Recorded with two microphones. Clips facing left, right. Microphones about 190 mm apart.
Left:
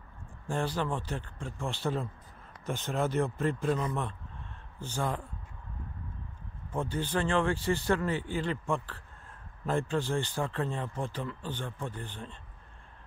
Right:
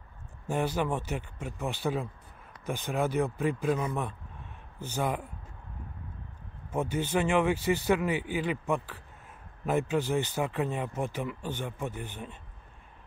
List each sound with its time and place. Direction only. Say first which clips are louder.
0.5 s speech: right 3 dB; 10° right (ahead or behind)
3.2 s speech: right 1 dB; centre (ahead or behind); by 5.1 s 20° right (ahead or behind)
7.0 s speech: right 2 dB; 10° right (ahead or behind)